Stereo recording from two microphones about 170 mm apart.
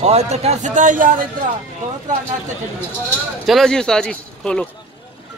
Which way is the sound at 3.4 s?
Centre (ahead or behind).